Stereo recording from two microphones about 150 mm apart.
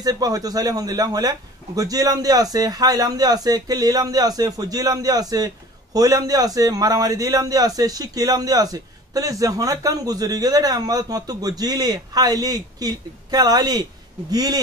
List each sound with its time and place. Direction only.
0.0 s a man's voice: 25° right (ahead or behind)